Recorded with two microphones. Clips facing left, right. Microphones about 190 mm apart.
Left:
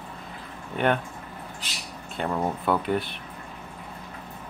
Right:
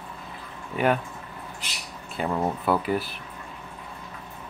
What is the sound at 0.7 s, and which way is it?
Speech, 5° right (ahead or behind).